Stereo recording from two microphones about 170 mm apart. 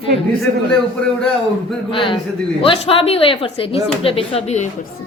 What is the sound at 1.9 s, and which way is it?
A woman's voice, 30° left (ahead or behind).